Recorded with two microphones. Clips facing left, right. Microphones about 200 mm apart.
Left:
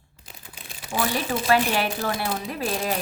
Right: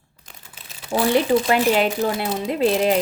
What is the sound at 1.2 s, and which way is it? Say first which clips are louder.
Speech: right 4 dB; 20° right (ahead or behind).